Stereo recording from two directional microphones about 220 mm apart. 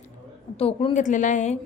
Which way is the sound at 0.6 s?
25° left (ahead or behind).